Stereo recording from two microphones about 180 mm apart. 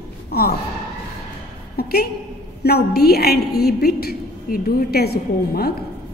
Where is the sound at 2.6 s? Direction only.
60° left (ahead or behind).